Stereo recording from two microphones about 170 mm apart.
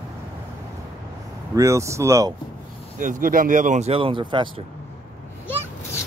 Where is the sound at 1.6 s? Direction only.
15° right (ahead or behind).